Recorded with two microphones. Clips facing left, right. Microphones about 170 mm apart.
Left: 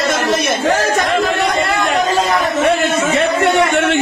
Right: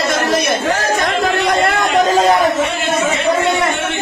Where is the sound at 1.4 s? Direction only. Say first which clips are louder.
Right 1 dB; 55° right (ahead or behind).